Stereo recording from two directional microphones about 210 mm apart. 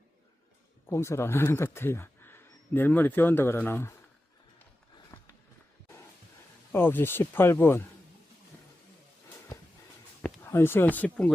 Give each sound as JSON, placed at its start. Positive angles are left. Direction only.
{"t": 0.9, "sound": "speech", "side_deg": 15}
{"t": 6.7, "sound": "speech", "side_deg": 10}
{"t": 10.2, "sound": "speech", "side_deg": 10}